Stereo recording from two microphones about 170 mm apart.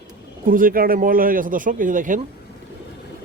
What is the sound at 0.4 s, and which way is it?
A man's voice, 55° right (ahead or behind).